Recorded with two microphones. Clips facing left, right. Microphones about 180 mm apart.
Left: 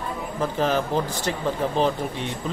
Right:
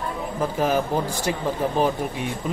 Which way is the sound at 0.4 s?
10° right (ahead or behind).